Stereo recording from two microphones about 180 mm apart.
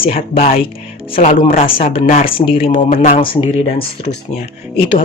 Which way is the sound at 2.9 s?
45° left (ahead or behind).